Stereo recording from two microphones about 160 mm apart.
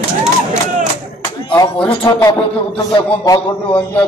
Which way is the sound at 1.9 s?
30° left (ahead or behind).